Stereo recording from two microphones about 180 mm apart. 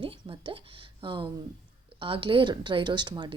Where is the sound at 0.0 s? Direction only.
30° right (ahead or behind).